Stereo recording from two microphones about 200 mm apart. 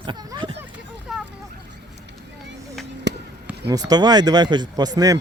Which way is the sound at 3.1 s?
60° right (ahead or behind).